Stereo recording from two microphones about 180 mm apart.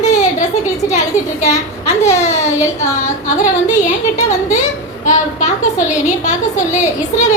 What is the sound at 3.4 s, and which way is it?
Speech, 45° left (ahead or behind).